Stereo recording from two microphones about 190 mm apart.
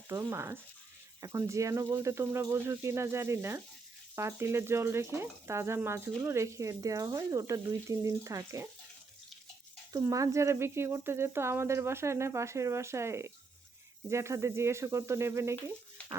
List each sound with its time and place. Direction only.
0.1 s speech: 15° right (ahead or behind)
9.9 s speech: 15° right (ahead or behind)